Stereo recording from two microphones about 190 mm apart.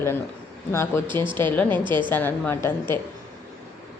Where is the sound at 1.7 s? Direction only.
25° right (ahead or behind).